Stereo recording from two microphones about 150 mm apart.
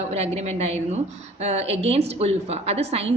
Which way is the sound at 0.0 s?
45° right (ahead or behind).